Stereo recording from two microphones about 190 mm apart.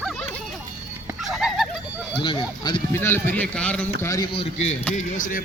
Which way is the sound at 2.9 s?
10° left (ahead or behind).